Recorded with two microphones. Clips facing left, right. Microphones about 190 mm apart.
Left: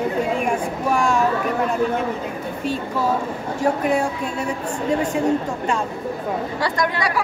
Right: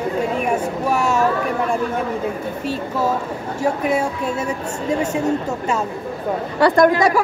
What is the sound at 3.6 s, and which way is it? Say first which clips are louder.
Speech: even; 10° right (ahead or behind).